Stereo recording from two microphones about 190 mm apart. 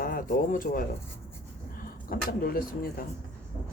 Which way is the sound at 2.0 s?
50° left (ahead or behind).